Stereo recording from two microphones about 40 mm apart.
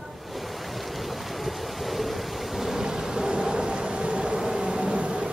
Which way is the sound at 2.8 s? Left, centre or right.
Centre.